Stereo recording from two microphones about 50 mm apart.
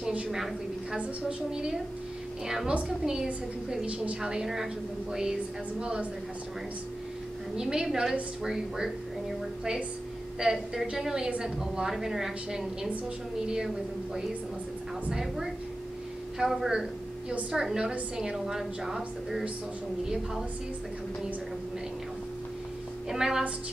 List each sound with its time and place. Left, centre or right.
1.5 s a woman's voice: centre
3.8 s a woman's voice: right
4.2 s a woman's voice: centre
7.5 s a woman's voice: centre
10.4 s a woman's voice: centre
15.0 s a woman's voice: centre
23.0 s a woman's voice: centre